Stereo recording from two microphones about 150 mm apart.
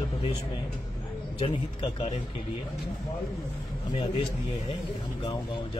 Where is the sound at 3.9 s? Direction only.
40° left (ahead or behind).